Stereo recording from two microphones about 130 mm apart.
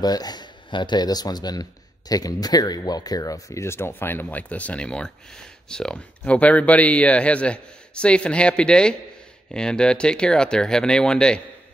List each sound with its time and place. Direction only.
0.0 s speech: 30° left (ahead or behind); by 11.4 s 5° left (ahead or behind)